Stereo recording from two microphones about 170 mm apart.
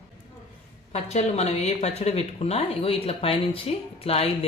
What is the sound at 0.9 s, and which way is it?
Speech, 40° left (ahead or behind).